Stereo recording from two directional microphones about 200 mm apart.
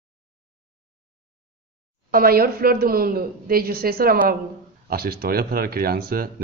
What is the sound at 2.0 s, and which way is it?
Speech, 45° right (ahead or behind).